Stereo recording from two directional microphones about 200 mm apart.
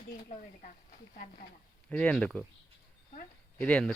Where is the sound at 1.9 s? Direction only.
5° left (ahead or behind).